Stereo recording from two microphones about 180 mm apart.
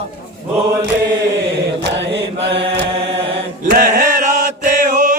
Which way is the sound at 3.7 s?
50° right (ahead or behind).